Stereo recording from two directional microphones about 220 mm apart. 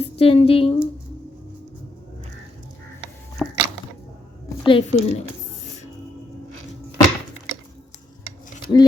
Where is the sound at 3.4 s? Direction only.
5° right (ahead or behind).